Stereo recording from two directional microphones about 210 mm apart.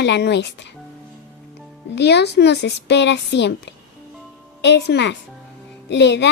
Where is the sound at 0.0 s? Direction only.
55° left (ahead or behind).